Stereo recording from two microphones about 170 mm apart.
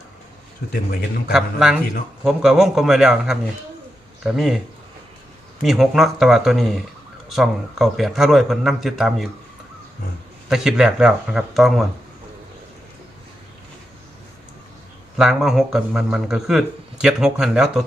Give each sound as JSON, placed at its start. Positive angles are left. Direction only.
{"t": 0.6, "sound": "a man's voice", "side_deg": 70}
{"t": 1.3, "sound": "speech", "side_deg": -5}
{"t": 5.6, "sound": "speech", "side_deg": 0}
{"t": 10.5, "sound": "speech", "side_deg": -5}
{"t": 15.2, "sound": "speech", "side_deg": -5}